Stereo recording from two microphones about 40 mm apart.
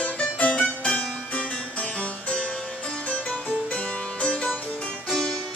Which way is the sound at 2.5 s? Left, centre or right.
Left.